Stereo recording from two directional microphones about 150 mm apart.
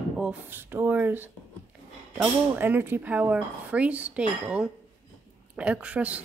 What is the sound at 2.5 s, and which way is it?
Speech, 15° right (ahead or behind).